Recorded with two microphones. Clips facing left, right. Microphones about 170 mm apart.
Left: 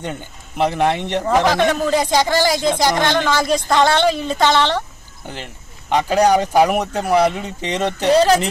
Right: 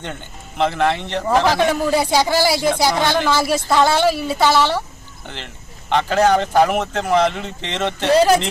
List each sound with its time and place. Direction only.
0.0 s speech: 10° left (ahead or behind)
1.5 s a woman's voice: 10° right (ahead or behind)
5.2 s speech: 10° left (ahead or behind)